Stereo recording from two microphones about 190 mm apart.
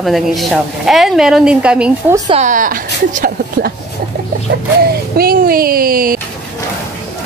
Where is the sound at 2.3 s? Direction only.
40° right (ahead or behind).